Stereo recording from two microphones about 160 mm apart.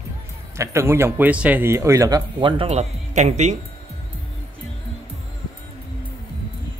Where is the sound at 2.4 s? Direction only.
35° right (ahead or behind).